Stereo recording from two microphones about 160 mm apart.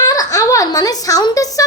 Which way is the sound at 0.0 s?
20° left (ahead or behind).